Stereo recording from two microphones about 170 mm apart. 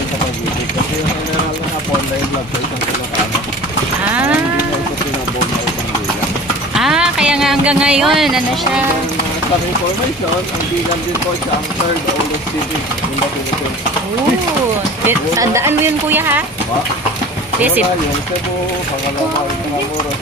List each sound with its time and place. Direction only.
6.7 s a sound: 5° right (ahead or behind)
15.0 s speech: 15° right (ahead or behind)
17.6 s speech: 10° right (ahead or behind)